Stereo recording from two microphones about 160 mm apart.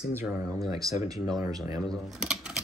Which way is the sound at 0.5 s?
20° right (ahead or behind).